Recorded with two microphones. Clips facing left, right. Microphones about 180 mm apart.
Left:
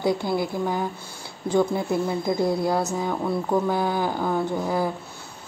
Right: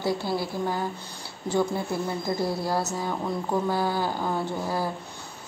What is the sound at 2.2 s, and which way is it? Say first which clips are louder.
Speech: left 5 dB; 20° left (ahead or behind).